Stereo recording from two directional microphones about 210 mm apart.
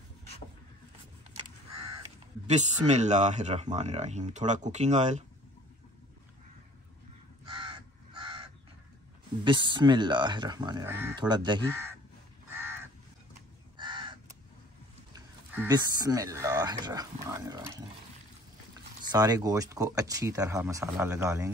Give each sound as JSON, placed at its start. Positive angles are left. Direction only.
{"t": 2.4, "sound": "speech", "side_deg": -35}
{"t": 7.4, "sound": "crow", "side_deg": -20}
{"t": 9.4, "sound": "speech", "side_deg": -25}
{"t": 12.4, "sound": "crow", "side_deg": -10}
{"t": 13.7, "sound": "crow", "side_deg": -20}
{"t": 15.5, "sound": "speech", "side_deg": -10}
{"t": 19.0, "sound": "speech", "side_deg": -20}